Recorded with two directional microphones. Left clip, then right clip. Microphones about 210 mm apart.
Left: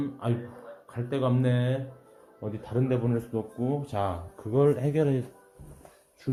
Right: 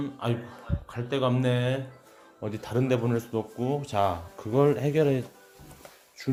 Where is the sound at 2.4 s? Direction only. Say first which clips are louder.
Right 2 dB; 25° right (ahead or behind).